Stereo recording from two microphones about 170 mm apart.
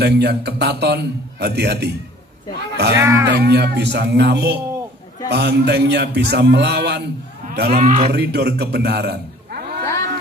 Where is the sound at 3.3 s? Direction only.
70° right (ahead or behind).